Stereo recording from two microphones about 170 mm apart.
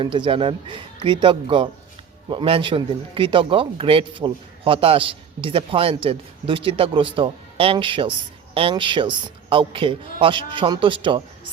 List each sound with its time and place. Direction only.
0.0 s a man's voice: 30° right (ahead or behind)